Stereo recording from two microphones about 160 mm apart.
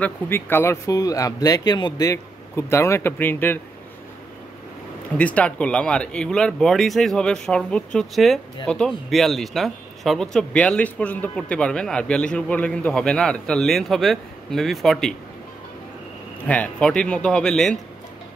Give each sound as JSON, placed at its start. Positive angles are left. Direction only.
{"t": 0.0, "sound": "speech", "side_deg": 15}
{"t": 5.1, "sound": "speech", "side_deg": 10}
{"t": 16.4, "sound": "speech", "side_deg": 10}